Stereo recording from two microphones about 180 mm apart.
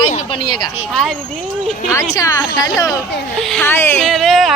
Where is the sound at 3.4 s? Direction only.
Centre (ahead or behind).